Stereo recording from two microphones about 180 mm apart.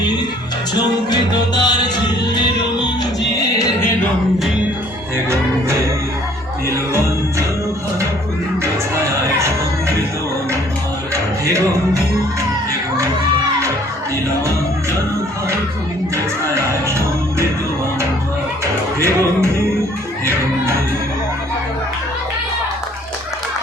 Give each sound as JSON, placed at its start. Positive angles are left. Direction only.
{"t": 1.1, "sound": "music", "side_deg": 25}
{"t": 5.1, "sound": "music", "side_deg": -15}
{"t": 6.9, "sound": "music", "side_deg": -15}
{"t": 18.9, "sound": "music", "side_deg": -15}